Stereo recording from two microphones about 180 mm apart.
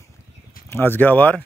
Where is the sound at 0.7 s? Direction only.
10° left (ahead or behind).